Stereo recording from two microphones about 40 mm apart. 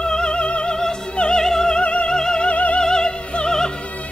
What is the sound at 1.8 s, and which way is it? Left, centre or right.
Music, left.